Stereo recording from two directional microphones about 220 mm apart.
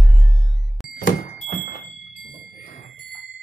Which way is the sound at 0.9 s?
40° left (ahead or behind).